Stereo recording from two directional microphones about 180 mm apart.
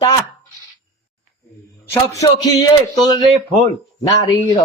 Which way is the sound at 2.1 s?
20° left (ahead or behind).